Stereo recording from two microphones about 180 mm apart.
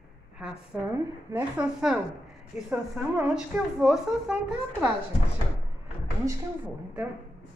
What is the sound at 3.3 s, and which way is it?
Speech, 5° right (ahead or behind).